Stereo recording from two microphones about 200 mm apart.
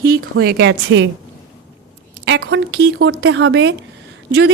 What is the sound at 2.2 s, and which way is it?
Speech, 65° right (ahead or behind).